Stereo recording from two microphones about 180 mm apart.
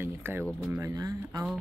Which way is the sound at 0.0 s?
10° right (ahead or behind).